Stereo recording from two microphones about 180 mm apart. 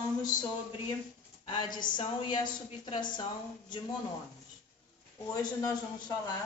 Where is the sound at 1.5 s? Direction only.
25° left (ahead or behind).